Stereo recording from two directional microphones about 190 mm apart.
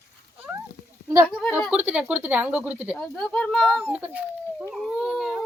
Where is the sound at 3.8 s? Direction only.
10° right (ahead or behind).